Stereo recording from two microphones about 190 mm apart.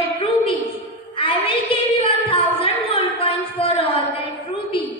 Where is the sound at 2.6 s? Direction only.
30° left (ahead or behind).